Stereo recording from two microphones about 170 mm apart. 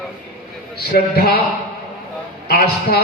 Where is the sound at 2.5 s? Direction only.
65° left (ahead or behind).